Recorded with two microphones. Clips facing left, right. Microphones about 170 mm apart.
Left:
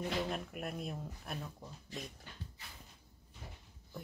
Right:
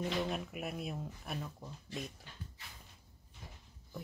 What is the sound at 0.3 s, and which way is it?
Speech, 5° right (ahead or behind).